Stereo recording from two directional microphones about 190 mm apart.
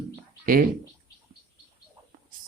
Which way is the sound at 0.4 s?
45° right (ahead or behind).